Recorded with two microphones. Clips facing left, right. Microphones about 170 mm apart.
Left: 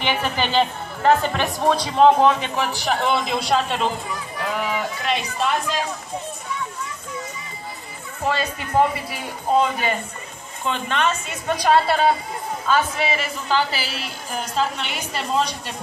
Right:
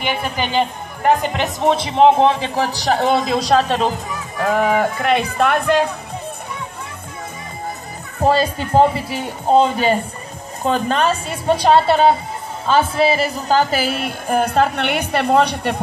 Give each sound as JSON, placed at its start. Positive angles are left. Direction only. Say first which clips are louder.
{"t": 0.0, "sound": "a woman's voice", "louder": "right 1 dB", "side_deg": -10}
{"t": 8.2, "sound": "a woman's voice", "louder": "right 8 dB", "side_deg": -35}
{"t": 10.6, "sound": "a woman's voice", "louder": "right 5 dB", "side_deg": -40}